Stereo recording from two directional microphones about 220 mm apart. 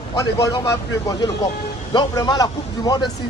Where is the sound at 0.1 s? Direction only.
15° left (ahead or behind).